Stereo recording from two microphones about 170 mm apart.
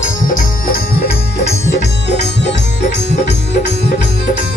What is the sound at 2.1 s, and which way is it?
Music, 90° left.